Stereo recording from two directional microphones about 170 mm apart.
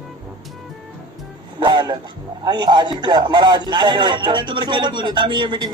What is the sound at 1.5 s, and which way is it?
A man's voice, 25° right (ahead or behind).